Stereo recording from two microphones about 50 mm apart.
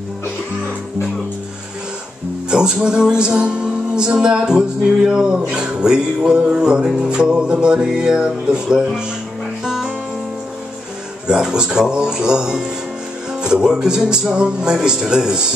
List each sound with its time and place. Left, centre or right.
2.5 s music: centre
11.2 s music: centre